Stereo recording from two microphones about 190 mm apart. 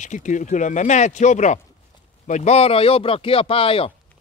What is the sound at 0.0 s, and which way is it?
Speech, 40° left (ahead or behind).